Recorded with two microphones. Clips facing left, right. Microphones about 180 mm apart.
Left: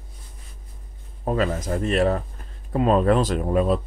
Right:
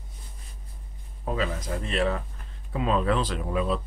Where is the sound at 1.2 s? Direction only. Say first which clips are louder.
Left 6 dB; 50° left (ahead or behind).